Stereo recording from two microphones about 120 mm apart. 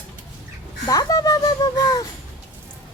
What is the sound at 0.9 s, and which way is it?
Music, 30° left (ahead or behind).